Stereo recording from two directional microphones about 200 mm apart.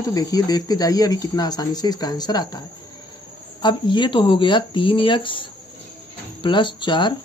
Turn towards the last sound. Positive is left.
turn(degrees=25)  # may be behind; listen again after turning